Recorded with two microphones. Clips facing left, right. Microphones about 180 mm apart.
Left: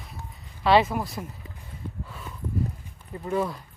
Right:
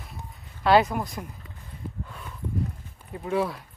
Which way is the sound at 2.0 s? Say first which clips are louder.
Left 1 dB; centre (ahead or behind).